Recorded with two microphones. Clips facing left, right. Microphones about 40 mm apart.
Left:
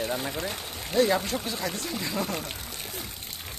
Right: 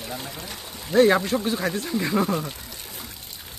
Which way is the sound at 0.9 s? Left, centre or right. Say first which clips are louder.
Right 6 dB; right.